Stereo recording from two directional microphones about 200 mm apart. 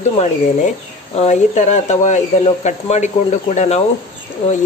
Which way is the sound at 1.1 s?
35° left (ahead or behind).